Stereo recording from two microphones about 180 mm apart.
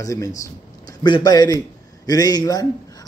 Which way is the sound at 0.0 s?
20° left (ahead or behind).